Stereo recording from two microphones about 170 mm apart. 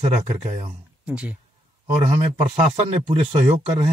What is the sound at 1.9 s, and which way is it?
Speech, 40° right (ahead or behind).